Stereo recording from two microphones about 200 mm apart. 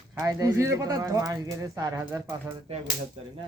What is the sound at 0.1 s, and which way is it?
Speech, 15° right (ahead or behind).